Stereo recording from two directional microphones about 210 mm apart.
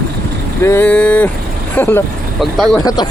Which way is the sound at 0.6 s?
10° left (ahead or behind).